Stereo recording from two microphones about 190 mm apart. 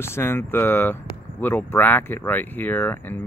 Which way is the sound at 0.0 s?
10° left (ahead or behind).